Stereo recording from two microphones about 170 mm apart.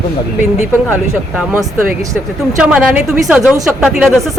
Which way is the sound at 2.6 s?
5° right (ahead or behind).